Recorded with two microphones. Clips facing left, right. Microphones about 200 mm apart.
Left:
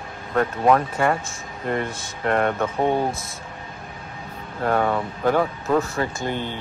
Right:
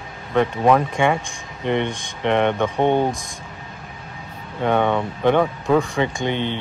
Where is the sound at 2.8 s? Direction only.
25° right (ahead or behind).